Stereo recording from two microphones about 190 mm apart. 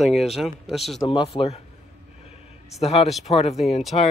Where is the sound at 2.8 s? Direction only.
35° left (ahead or behind).